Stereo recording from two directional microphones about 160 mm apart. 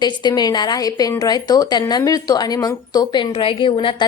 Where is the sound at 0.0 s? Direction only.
25° left (ahead or behind).